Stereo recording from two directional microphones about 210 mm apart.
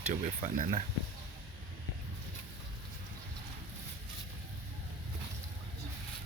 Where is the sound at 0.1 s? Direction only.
35° right (ahead or behind).